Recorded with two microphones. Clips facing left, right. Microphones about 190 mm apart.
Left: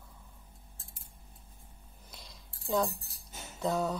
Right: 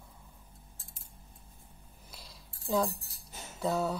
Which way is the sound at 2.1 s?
5° right (ahead or behind).